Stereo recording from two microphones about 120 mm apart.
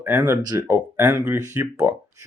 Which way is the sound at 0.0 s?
15° right (ahead or behind).